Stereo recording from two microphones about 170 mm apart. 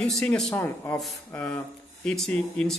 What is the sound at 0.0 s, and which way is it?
Speech, 5° left (ahead or behind).